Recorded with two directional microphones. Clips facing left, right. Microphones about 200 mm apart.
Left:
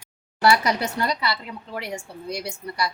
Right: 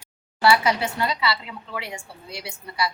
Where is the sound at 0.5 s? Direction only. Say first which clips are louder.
Right 1 dB; 40° left (ahead or behind).